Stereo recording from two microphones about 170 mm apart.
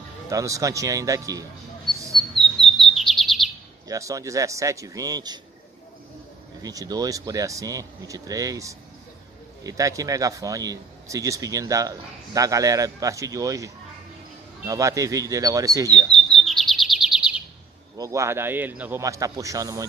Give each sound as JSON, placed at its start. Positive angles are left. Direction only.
{"t": 0.3, "sound": "speech", "side_deg": -20}
{"t": 2.1, "sound": "bird", "side_deg": 0}
{"t": 3.8, "sound": "speech", "side_deg": -20}
{"t": 6.6, "sound": "speech", "side_deg": -20}
{"t": 16.1, "sound": "chirp", "side_deg": 0}
{"t": 17.9, "sound": "a man's voice", "side_deg": -20}